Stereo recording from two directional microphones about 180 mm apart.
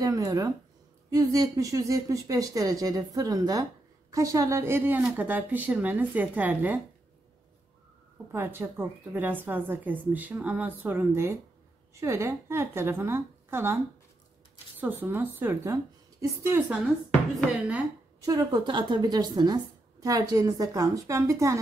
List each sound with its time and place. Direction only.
0.0 s a woman's voice: 20° right (ahead or behind)
8.3 s a woman's voice: 10° right (ahead or behind)
14.8 s a woman's voice: 10° right (ahead or behind)
18.2 s a woman's voice: 20° right (ahead or behind)